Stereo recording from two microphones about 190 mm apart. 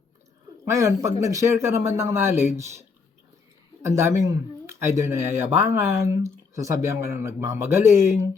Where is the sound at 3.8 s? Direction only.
15° right (ahead or behind).